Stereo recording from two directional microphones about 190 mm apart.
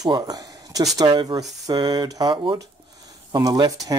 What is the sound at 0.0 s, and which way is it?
Speech, 20° right (ahead or behind).